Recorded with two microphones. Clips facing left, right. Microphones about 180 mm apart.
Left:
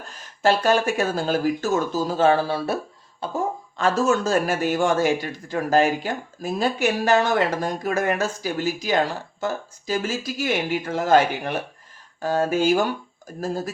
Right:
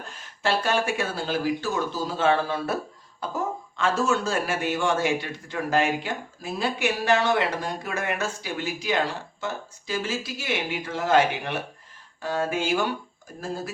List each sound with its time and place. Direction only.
0.4 s speech: 40° left (ahead or behind)
3.8 s speech: 40° left (ahead or behind)